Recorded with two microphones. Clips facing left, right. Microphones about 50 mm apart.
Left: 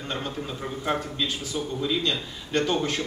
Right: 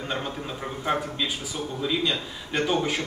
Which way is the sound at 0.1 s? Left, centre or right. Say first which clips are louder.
Left 1 dB; centre.